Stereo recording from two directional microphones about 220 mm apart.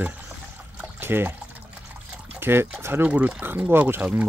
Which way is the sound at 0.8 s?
10° right (ahead or behind).